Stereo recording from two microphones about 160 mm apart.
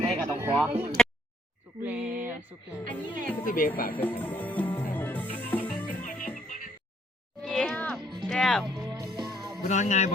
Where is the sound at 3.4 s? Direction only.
60° left (ahead or behind).